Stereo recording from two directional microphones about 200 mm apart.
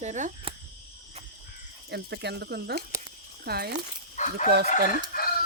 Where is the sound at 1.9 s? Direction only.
55° right (ahead or behind).